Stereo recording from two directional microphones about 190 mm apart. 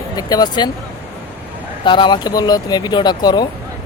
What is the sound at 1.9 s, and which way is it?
Speech, 25° left (ahead or behind).